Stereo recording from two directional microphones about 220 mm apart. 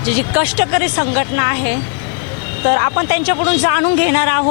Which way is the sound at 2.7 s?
15° left (ahead or behind).